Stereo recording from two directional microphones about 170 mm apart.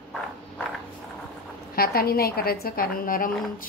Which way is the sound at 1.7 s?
60° left (ahead or behind).